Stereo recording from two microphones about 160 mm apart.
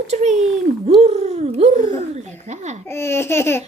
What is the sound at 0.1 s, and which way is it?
Speech, 45° right (ahead or behind).